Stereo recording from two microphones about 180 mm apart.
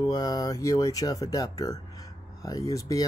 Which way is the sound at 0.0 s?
20° left (ahead or behind).